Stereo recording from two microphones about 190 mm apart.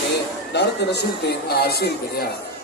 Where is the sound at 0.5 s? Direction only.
60° left (ahead or behind).